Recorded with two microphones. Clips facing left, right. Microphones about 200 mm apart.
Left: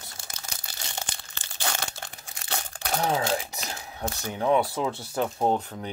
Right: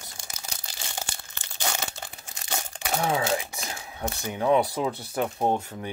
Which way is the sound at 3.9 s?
15° right (ahead or behind).